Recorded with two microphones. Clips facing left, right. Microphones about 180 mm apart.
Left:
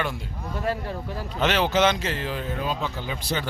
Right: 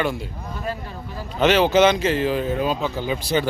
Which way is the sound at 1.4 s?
Centre (ahead or behind).